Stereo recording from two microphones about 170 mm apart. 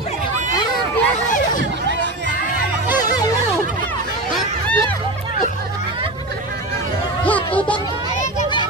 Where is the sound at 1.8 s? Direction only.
90° right.